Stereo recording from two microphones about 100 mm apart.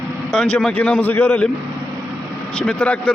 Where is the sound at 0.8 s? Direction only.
15° left (ahead or behind).